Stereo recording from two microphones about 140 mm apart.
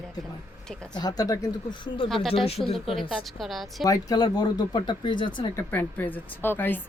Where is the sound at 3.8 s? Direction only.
25° left (ahead or behind).